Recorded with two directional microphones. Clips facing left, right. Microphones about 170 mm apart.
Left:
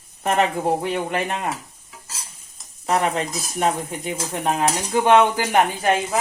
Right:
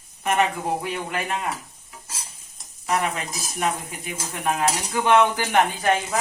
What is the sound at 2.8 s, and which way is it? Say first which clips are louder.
Speech: left 4 dB; 40° left (ahead or behind).